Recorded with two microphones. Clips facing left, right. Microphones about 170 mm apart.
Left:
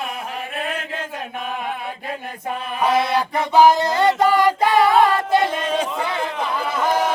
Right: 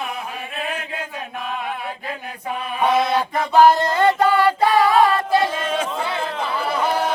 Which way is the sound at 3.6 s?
10° left (ahead or behind).